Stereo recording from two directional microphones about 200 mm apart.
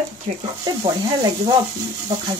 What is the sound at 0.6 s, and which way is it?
Speech, 20° right (ahead or behind).